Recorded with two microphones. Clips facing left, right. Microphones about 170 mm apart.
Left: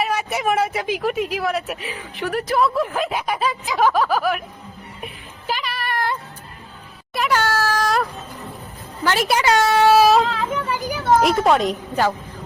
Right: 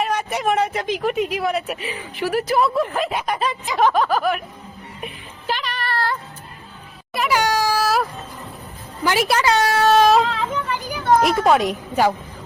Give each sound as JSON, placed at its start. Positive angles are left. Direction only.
{"t": 0.0, "sound": "speech", "side_deg": 10}
{"t": 5.5, "sound": "a sound", "side_deg": 5}
{"t": 7.1, "sound": "meow", "side_deg": 0}
{"t": 7.3, "sound": "a sound", "side_deg": -15}
{"t": 9.4, "sound": "speech", "side_deg": 25}
{"t": 9.8, "sound": "speech", "side_deg": 5}